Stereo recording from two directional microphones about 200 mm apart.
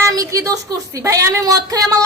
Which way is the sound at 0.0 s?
15° right (ahead or behind).